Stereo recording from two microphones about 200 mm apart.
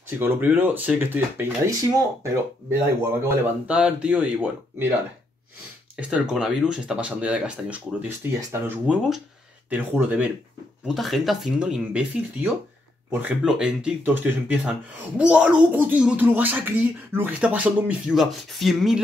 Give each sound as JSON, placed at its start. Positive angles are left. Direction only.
{"t": 0.2, "sound": "speech", "side_deg": -10}
{"t": 5.9, "sound": "speech", "side_deg": -5}
{"t": 13.1, "sound": "speech", "side_deg": -5}